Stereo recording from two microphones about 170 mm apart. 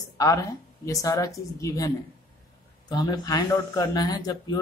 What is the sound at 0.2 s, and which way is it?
Speech, 20° left (ahead or behind).